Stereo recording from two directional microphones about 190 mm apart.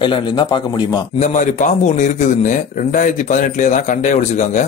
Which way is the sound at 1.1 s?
40° left (ahead or behind).